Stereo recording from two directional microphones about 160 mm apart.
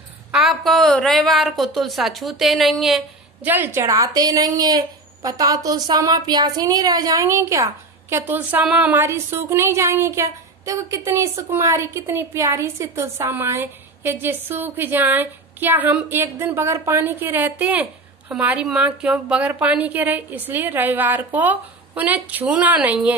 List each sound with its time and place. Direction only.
0.3 s a woman's voice: centre (ahead or behind)
3.4 s a woman's voice: 10° right (ahead or behind)